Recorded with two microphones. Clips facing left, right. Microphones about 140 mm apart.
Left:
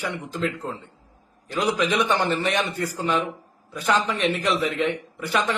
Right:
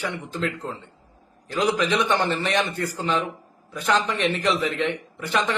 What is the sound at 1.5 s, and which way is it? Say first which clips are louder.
A man's voice: right 1 dB; 5° left (ahead or behind).